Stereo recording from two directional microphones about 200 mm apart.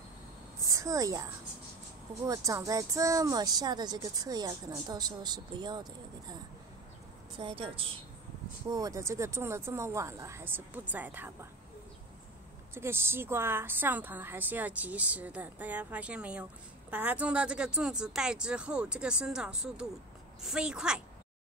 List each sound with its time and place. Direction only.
0.7 s a woman's voice: 15° right (ahead or behind)
7.3 s a woman's voice: 25° right (ahead or behind); by 11.3 s 10° right (ahead or behind)
12.7 s a woman's voice: 10° right (ahead or behind)